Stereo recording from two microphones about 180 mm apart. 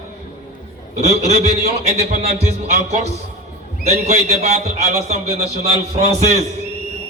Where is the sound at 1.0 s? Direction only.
40° right (ahead or behind).